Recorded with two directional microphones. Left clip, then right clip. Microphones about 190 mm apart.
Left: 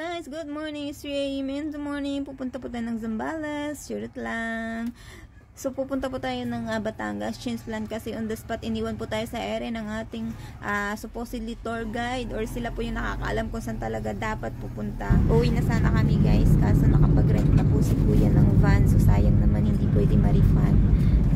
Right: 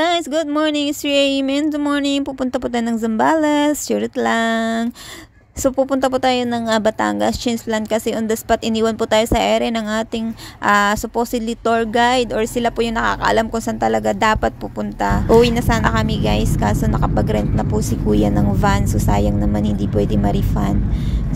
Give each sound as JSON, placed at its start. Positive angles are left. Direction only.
{"t": 0.0, "sound": "speech", "side_deg": -45}